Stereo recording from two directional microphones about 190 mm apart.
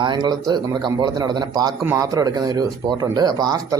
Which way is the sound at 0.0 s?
20° right (ahead or behind).